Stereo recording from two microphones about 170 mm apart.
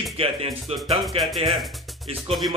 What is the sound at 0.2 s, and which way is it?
Speech, 35° right (ahead or behind).